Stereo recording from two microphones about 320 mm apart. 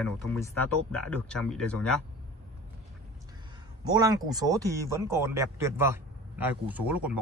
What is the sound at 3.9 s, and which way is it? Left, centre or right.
Speech, centre.